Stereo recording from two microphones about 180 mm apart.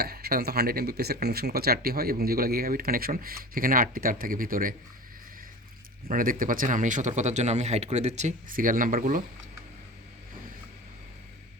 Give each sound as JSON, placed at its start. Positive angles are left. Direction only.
{"t": 0.0, "sound": "speech", "side_deg": -60}
{"t": 6.1, "sound": "speech", "side_deg": -50}